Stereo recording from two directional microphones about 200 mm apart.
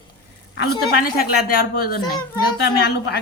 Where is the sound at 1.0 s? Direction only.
45° left (ahead or behind).